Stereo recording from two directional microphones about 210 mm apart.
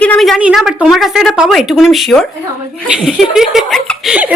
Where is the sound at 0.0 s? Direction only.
5° left (ahead or behind).